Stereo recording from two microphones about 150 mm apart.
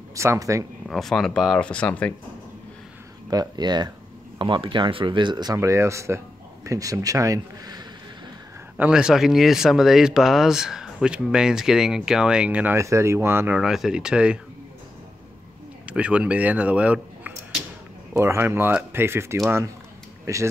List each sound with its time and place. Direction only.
0.1 s speech: 20° right (ahead or behind)
0.8 s speech: centre (ahead or behind)
3.3 s speech: 25° right (ahead or behind)
8.7 s speech: 5° right (ahead or behind)
13.6 s speech: 5° right (ahead or behind)
15.9 s speech: 10° right (ahead or behind)